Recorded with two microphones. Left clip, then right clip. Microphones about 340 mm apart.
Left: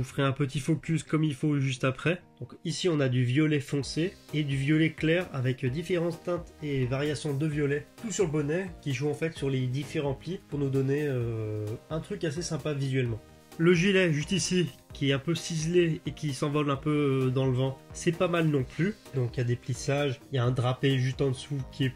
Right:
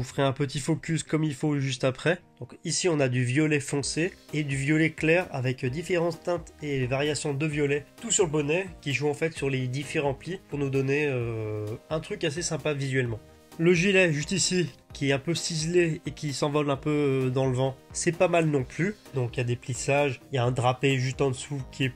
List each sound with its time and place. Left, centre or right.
0.0 s speech: centre
13.6 s speech: centre